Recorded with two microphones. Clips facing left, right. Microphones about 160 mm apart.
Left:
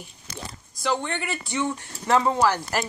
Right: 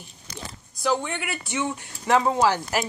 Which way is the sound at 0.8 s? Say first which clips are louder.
Right 1 dB; 10° right (ahead or behind).